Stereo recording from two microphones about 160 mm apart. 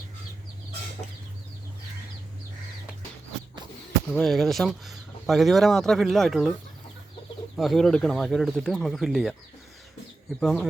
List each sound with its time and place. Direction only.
4.1 s speech: centre (ahead or behind)
7.5 s speech: centre (ahead or behind)
10.4 s speech: centre (ahead or behind)